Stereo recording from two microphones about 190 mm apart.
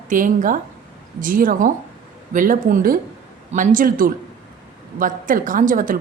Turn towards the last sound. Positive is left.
turn(degrees=-45)  # may be behind; listen again after turning